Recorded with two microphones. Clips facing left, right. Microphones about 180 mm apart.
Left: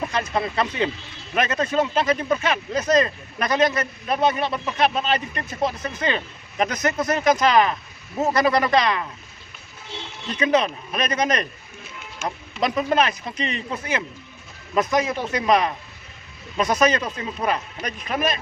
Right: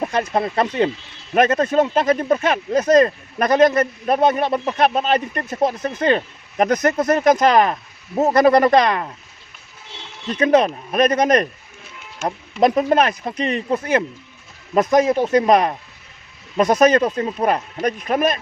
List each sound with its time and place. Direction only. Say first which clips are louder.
0.0 s speech: right 4 dB; 55° right (ahead or behind)
10.2 s speech: right 5 dB; 50° right (ahead or behind)